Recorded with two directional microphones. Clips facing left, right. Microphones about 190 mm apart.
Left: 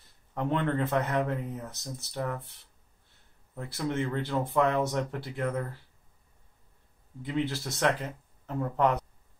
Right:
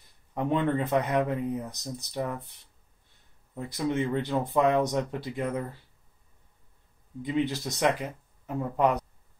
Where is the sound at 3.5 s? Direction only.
15° right (ahead or behind).